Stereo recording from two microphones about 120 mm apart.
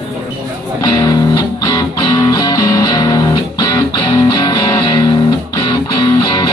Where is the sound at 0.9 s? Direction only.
35° left (ahead or behind).